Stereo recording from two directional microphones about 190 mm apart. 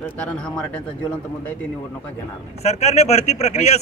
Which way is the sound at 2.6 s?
35° left (ahead or behind).